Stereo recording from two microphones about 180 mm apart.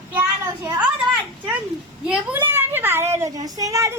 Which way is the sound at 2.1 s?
10° right (ahead or behind).